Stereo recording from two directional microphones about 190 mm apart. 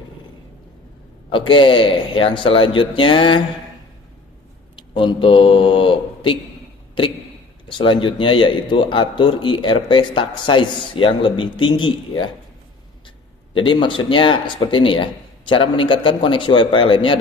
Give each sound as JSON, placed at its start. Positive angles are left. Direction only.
{"t": 1.3, "sound": "a man's voice", "side_deg": 25}
{"t": 4.7, "sound": "speech", "side_deg": 25}
{"t": 7.6, "sound": "a man's voice", "side_deg": 25}
{"t": 13.5, "sound": "a man's voice", "side_deg": 25}